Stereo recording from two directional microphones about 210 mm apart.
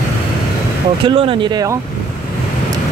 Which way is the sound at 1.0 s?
25° right (ahead or behind).